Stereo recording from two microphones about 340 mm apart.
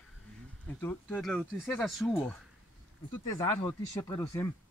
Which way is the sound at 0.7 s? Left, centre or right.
Centre.